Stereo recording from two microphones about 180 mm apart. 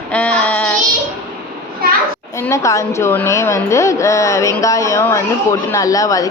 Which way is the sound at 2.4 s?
15° left (ahead or behind).